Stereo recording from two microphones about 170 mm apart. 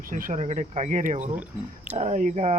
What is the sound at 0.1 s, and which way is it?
Speech, 55° right (ahead or behind).